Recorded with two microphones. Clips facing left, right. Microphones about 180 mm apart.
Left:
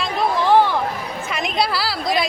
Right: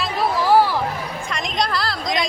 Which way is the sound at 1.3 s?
5° left (ahead or behind).